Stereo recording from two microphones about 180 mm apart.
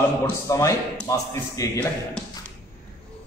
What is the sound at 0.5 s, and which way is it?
A man's voice, 15° left (ahead or behind).